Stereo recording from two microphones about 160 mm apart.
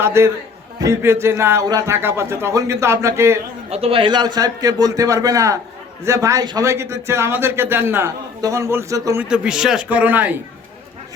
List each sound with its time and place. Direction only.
0.0 s a man's voice: 15° right (ahead or behind)
3.7 s a man's voice: 40° right (ahead or behind); by 9.2 s 20° right (ahead or behind)
9.2 s a man's voice: 5° right (ahead or behind)